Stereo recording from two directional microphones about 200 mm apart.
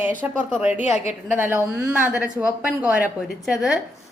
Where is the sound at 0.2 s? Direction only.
10° right (ahead or behind).